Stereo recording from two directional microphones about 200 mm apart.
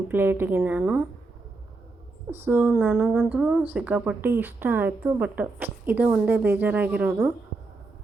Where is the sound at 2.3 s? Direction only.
10° right (ahead or behind).